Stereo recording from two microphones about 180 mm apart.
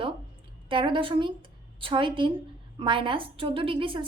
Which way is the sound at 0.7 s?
25° right (ahead or behind).